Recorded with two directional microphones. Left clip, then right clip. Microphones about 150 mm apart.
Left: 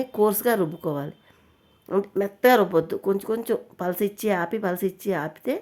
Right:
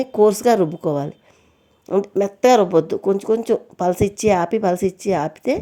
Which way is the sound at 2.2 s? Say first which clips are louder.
Right 4 dB; 30° right (ahead or behind).